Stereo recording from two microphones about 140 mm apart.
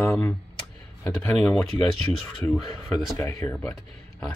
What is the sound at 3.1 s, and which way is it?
Speech, 20° left (ahead or behind).